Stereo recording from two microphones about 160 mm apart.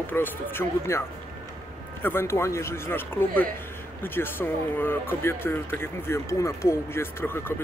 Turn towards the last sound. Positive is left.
turn(degrees=15)  # may be behind; listen again after turning